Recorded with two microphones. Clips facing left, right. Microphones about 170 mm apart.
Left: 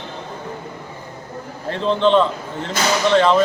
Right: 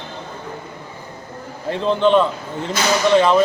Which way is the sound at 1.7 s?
5° right (ahead or behind).